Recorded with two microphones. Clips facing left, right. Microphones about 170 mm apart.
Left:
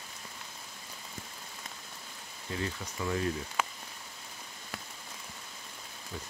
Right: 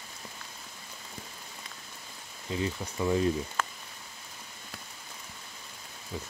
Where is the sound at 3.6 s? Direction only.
10° left (ahead or behind).